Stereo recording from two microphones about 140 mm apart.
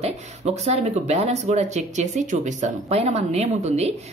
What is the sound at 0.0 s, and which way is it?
Speech, 50° right (ahead or behind).